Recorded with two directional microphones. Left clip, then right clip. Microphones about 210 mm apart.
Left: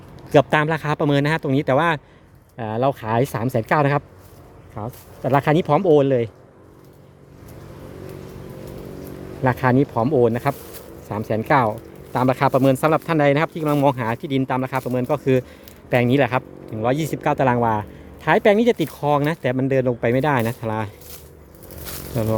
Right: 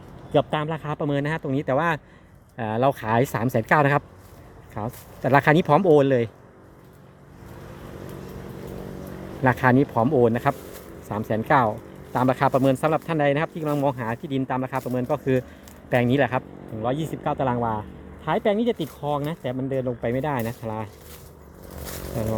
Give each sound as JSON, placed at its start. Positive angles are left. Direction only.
{"t": 0.3, "sound": "speech", "side_deg": 30}
{"t": 2.6, "sound": "speech", "side_deg": 5}
{"t": 9.4, "sound": "speech", "side_deg": 5}
{"t": 16.8, "sound": "speech", "side_deg": 25}
{"t": 22.2, "sound": "speech", "side_deg": 20}